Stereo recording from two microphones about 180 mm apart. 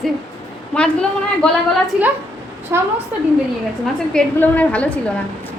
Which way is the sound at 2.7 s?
15° right (ahead or behind).